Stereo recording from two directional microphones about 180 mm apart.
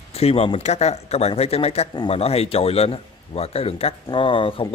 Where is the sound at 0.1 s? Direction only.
35° left (ahead or behind).